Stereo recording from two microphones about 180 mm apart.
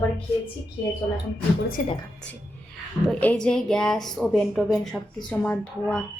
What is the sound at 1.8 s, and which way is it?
Speech, 45° left (ahead or behind).